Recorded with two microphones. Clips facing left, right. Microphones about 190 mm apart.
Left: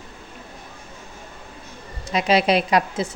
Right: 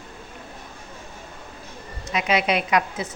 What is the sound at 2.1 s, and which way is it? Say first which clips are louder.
Speech: left 4 dB; 35° left (ahead or behind).